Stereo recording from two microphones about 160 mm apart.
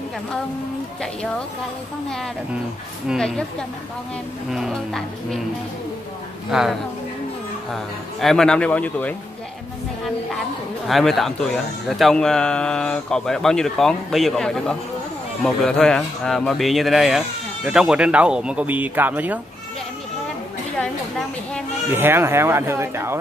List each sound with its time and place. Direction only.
3.1 s speech: 5° left (ahead or behind)
4.5 s speech: centre (ahead or behind)
6.5 s speech: centre (ahead or behind)
10.9 s speech: centre (ahead or behind)
21.8 s speech: 15° right (ahead or behind)